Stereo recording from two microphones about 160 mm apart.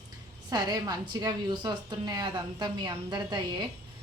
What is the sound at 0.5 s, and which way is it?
A woman's voice, 25° right (ahead or behind).